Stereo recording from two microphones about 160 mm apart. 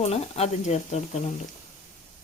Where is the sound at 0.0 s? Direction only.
40° left (ahead or behind).